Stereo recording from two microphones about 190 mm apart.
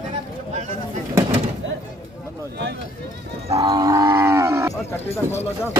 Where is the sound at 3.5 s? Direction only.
20° right (ahead or behind).